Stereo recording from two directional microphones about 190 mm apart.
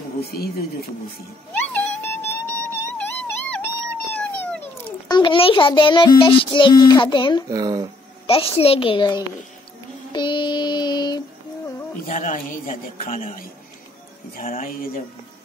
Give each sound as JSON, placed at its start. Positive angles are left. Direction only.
{"t": 0.2, "sound": "speech", "side_deg": 55}
{"t": 1.5, "sound": "music", "side_deg": 10}
{"t": 5.0, "sound": "a child's voice", "side_deg": 25}
{"t": 7.4, "sound": "speech", "side_deg": -20}
{"t": 8.3, "sound": "a child's voice", "side_deg": 30}
{"t": 10.1, "sound": "child singing", "side_deg": 25}
{"t": 12.1, "sound": "a man's voice", "side_deg": 45}
{"t": 14.5, "sound": "speech", "side_deg": 45}